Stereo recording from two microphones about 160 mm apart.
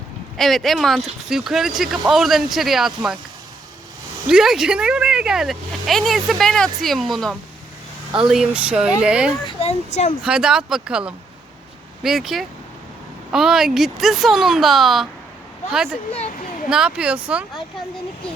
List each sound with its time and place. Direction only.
0.3 s speech: centre (ahead or behind)
4.3 s speech: 5° right (ahead or behind)
9.4 s speech: 35° left (ahead or behind)
10.2 s speech: 5° right (ahead or behind)